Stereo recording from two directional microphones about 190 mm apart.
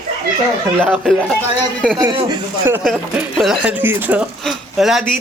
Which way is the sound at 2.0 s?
20° right (ahead or behind).